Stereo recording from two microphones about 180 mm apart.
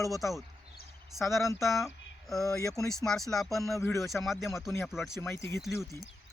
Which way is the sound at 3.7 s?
15° left (ahead or behind).